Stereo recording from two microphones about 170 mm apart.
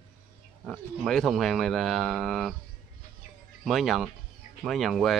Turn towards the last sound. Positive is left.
turn(degrees=0)  # may be behind; listen again after turning